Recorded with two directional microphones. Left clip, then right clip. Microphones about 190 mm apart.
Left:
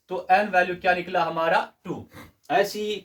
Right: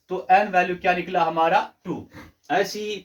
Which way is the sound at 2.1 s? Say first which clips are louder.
Left 1 dB; 15° left (ahead or behind).